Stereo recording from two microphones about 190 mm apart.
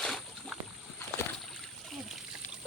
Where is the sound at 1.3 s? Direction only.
Centre (ahead or behind).